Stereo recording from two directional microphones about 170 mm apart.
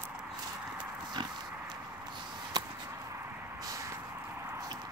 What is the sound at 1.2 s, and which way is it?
Dog, 30° right (ahead or behind).